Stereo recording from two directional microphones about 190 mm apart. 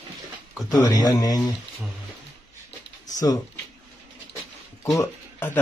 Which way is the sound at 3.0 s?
20° left (ahead or behind).